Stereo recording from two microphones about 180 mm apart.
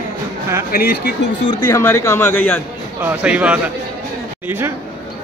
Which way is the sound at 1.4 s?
25° left (ahead or behind).